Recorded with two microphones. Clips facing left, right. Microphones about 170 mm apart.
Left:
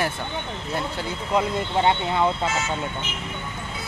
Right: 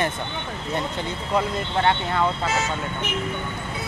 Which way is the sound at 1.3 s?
15° left (ahead or behind).